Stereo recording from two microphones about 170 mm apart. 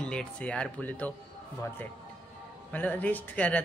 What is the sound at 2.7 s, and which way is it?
Speech, 10° left (ahead or behind).